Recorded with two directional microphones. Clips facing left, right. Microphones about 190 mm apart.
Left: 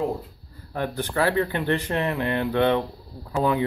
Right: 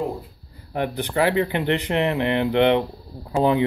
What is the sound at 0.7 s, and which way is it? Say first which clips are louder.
Speech: right 3 dB; 20° right (ahead or behind).